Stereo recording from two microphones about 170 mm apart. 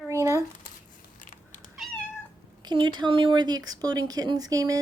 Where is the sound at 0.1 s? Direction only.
15° right (ahead or behind).